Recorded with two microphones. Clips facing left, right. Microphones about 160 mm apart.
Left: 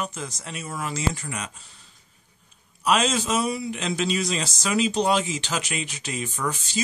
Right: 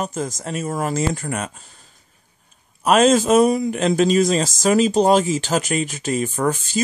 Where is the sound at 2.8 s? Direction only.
50° right (ahead or behind).